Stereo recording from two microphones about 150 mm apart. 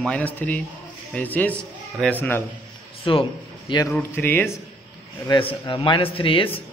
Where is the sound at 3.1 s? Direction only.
35° left (ahead or behind).